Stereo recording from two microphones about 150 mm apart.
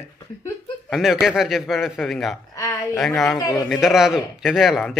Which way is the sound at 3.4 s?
25° left (ahead or behind).